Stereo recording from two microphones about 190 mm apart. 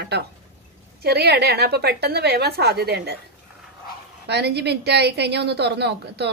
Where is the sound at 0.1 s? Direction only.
60° right (ahead or behind).